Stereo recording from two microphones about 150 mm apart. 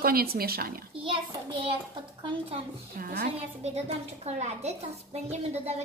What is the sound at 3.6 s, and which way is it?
A child's voice, 45° right (ahead or behind).